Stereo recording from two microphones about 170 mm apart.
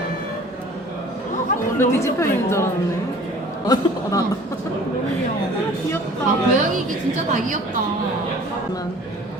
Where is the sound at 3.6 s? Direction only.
20° left (ahead or behind).